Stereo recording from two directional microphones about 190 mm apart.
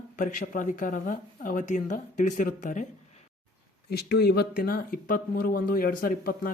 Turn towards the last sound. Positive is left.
turn(degrees=50)  # may be behind; listen again after turning